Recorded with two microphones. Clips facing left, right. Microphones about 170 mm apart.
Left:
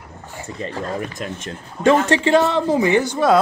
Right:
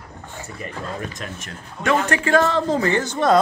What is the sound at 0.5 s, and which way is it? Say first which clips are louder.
A man's voice: left 6 dB; 25° left (ahead or behind).